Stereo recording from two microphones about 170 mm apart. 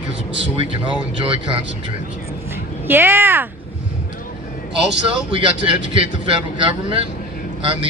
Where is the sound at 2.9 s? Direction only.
10° right (ahead or behind).